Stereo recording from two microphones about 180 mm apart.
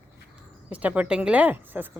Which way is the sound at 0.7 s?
10° right (ahead or behind).